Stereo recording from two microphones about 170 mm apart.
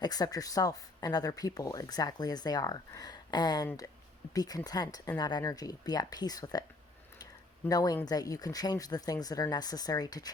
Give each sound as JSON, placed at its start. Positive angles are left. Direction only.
{"t": 0.0, "sound": "speech", "side_deg": 20}